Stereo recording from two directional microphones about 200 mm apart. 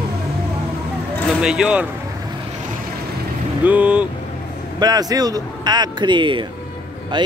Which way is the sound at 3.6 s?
5° right (ahead or behind).